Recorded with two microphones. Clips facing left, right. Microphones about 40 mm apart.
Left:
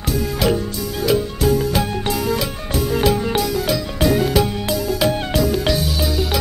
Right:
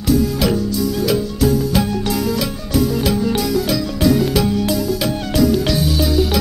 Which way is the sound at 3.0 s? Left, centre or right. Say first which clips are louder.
Even; centre.